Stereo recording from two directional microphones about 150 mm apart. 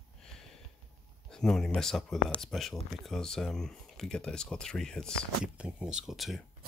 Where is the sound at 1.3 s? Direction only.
5° left (ahead or behind).